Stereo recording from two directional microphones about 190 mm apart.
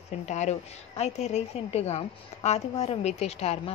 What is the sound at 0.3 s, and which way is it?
A woman's voice, 35° left (ahead or behind).